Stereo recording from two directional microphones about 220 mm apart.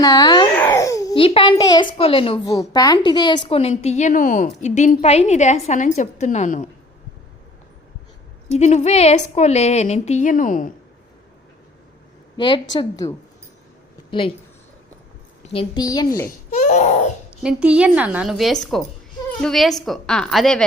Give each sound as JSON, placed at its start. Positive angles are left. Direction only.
{"t": 0.0, "sound": "a child's voice", "side_deg": 15}
{"t": 8.5, "sound": "a woman's voice", "side_deg": 30}
{"t": 12.7, "sound": "a woman's voice", "side_deg": 15}
{"t": 15.5, "sound": "a woman's voice", "side_deg": 20}
{"t": 16.5, "sound": "laughter", "side_deg": 35}
{"t": 17.4, "sound": "a woman's voice", "side_deg": -5}